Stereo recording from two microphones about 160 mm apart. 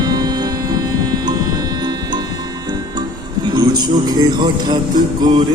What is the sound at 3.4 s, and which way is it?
Speech, 25° right (ahead or behind).